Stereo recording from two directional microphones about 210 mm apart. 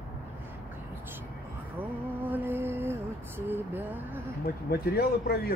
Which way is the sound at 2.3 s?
10° right (ahead or behind).